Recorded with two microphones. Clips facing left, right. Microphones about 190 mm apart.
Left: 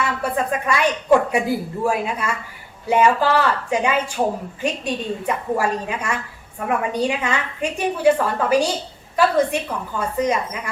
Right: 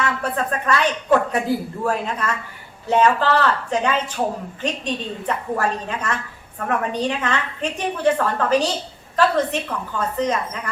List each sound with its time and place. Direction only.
0.0 s a woman's voice: 10° left (ahead or behind)